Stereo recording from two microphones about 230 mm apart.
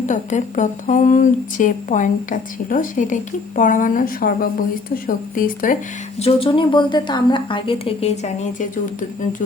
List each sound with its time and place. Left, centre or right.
0.0 s speech: left
6.1 s a woman's voice: left